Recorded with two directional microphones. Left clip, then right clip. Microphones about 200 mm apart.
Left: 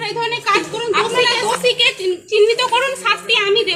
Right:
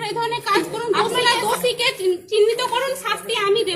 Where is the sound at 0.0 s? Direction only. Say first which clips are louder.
Left 3 dB; 25° right (ahead or behind).